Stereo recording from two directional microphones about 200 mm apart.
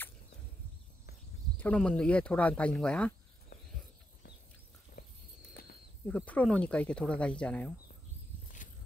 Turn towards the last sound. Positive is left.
turn(degrees=5)  # may be behind; listen again after turning